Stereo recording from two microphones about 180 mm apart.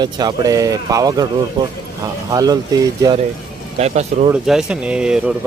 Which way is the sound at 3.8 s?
35° right (ahead or behind).